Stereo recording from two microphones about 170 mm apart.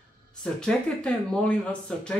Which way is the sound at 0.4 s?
5° left (ahead or behind).